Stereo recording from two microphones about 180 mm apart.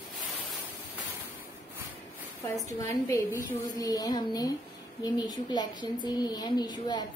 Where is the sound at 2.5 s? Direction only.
15° left (ahead or behind).